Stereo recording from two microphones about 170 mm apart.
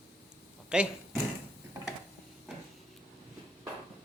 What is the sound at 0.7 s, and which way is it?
Speech, 5° right (ahead or behind).